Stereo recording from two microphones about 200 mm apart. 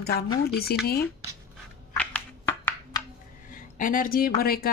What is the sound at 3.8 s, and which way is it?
Speech, 45° left (ahead or behind).